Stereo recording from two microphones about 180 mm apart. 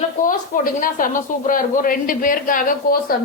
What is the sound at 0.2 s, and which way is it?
Speech, 50° left (ahead or behind).